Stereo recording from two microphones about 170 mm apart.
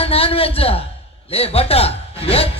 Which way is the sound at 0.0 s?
35° left (ahead or behind).